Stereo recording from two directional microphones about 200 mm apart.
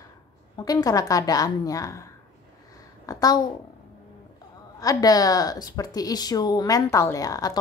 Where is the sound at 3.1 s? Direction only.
20° left (ahead or behind).